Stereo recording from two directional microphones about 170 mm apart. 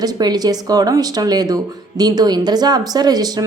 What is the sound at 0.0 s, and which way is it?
A woman's voice, 25° right (ahead or behind).